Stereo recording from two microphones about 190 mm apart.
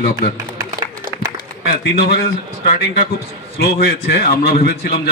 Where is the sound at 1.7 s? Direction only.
55° left (ahead or behind).